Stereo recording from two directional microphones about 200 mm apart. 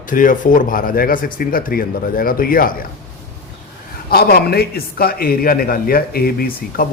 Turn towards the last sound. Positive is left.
turn(degrees=50)  # may be behind; listen again after turning